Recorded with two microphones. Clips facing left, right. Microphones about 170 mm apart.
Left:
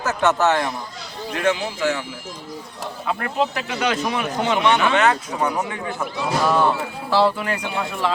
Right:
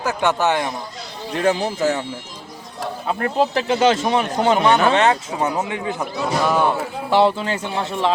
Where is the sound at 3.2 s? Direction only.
35° right (ahead or behind).